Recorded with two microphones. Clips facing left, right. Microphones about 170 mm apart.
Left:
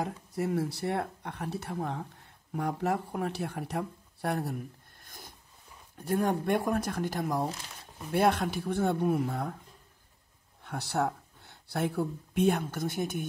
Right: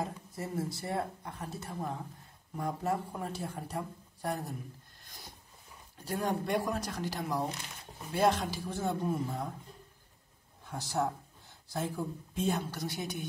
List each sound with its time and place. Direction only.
0.0 s speech: 70° left (ahead or behind)
5.0 s a sound: 50° left (ahead or behind)
5.9 s speech: 50° left (ahead or behind)
10.6 s speech: 65° left (ahead or behind)